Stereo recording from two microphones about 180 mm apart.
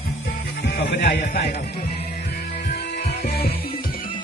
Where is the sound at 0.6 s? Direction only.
75° left (ahead or behind).